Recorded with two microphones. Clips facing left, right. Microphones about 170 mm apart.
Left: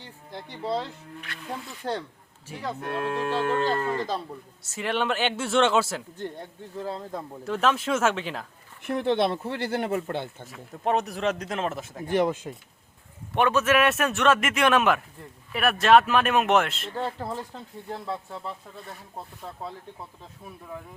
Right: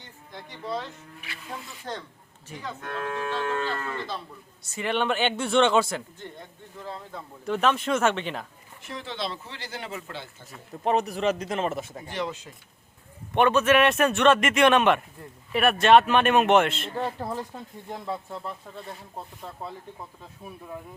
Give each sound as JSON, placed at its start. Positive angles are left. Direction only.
{"t": 0.6, "sound": "speech", "side_deg": 30}
{"t": 1.3, "sound": "a man's voice", "side_deg": -5}
{"t": 1.8, "sound": "livestock", "side_deg": 35}
{"t": 3.5, "sound": "livestock", "side_deg": 40}
{"t": 4.6, "sound": "a man's voice", "side_deg": 0}
{"t": 6.7, "sound": "livestock", "side_deg": 40}
{"t": 7.4, "sound": "a man's voice", "side_deg": 0}
{"t": 8.8, "sound": "speech", "side_deg": 55}
{"t": 10.4, "sound": "a man's voice", "side_deg": 0}
{"t": 12.0, "sound": "speech", "side_deg": 50}
{"t": 13.3, "sound": "a man's voice", "side_deg": 5}
{"t": 17.0, "sound": "speech", "side_deg": -10}
{"t": 19.1, "sound": "a man's voice", "side_deg": 5}